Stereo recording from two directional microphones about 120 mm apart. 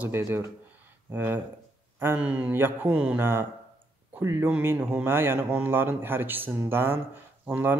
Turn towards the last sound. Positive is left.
turn(degrees=-15)  # may be behind; listen again after turning